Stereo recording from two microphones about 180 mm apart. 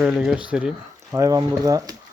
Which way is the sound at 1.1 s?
20° right (ahead or behind).